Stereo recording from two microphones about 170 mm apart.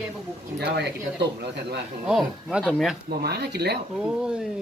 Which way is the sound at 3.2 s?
70° right (ahead or behind).